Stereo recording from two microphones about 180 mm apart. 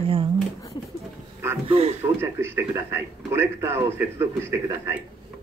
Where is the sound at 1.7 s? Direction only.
35° right (ahead or behind).